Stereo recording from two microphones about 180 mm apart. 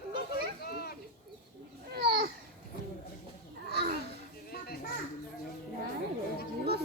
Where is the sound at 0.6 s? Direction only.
60° left (ahead or behind).